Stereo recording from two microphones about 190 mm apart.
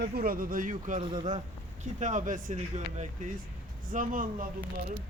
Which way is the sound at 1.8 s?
40° right (ahead or behind).